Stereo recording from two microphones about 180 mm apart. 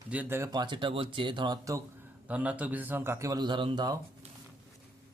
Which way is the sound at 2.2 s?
10° right (ahead or behind).